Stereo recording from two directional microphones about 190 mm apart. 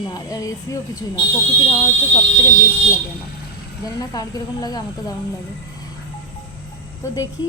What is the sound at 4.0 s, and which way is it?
Speech, 20° left (ahead or behind).